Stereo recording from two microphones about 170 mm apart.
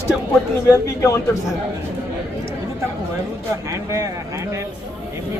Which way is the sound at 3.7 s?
20° right (ahead or behind).